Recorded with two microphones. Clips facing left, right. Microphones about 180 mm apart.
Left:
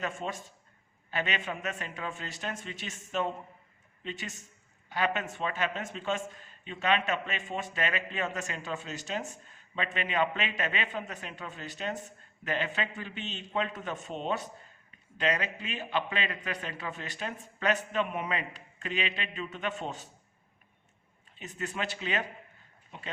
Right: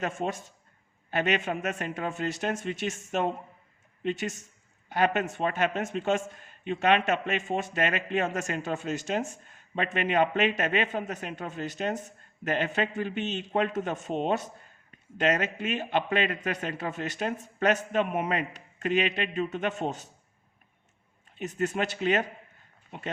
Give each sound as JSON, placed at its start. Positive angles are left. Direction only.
{"t": 0.2, "sound": "a man's voice", "side_deg": -55}
{"t": 4.9, "sound": "a man's voice", "side_deg": -50}
{"t": 21.3, "sound": "a man's voice", "side_deg": -45}